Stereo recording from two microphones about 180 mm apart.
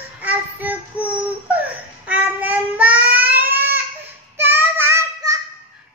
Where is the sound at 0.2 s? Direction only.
10° right (ahead or behind).